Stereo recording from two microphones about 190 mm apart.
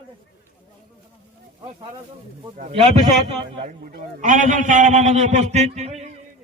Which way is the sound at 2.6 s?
35° right (ahead or behind).